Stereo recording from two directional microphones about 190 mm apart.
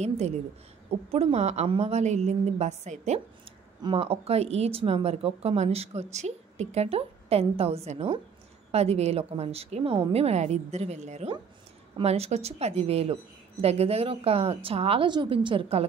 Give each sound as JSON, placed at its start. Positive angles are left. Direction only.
{"t": 0.8, "sound": "a woman's voice", "side_deg": -30}